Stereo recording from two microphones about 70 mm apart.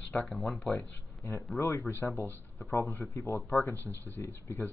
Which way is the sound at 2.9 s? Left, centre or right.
Left.